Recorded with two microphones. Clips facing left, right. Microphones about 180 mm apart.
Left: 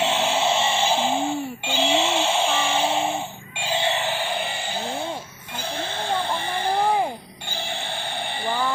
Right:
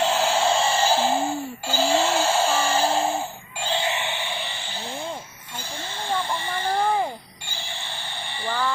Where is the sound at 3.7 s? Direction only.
30° left (ahead or behind).